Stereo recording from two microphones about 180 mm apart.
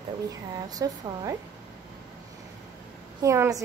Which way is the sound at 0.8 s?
20° right (ahead or behind).